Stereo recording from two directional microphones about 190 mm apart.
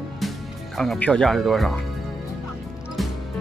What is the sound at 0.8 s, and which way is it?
Speech, 5° left (ahead or behind).